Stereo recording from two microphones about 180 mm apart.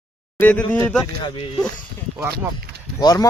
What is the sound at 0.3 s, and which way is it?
Speech, 10° left (ahead or behind).